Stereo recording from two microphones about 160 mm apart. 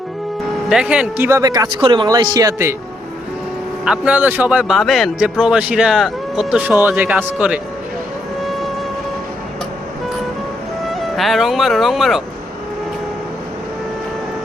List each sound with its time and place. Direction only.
0.7 s speech: 5° right (ahead or behind)
3.8 s a man's voice: 5° right (ahead or behind)
8.4 s music: centre (ahead or behind)
11.2 s speech: centre (ahead or behind)